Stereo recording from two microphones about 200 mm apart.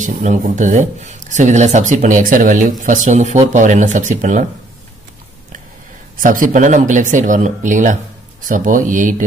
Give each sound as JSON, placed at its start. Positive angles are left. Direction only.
{"t": 0.0, "sound": "speech", "side_deg": -40}
{"t": 6.2, "sound": "speech", "side_deg": -45}